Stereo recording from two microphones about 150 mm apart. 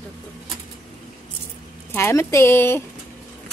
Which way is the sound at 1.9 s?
15° left (ahead or behind).